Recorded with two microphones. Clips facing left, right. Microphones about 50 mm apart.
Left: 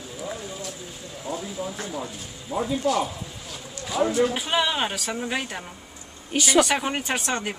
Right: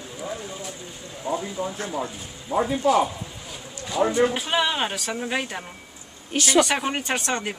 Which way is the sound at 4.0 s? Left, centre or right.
Centre.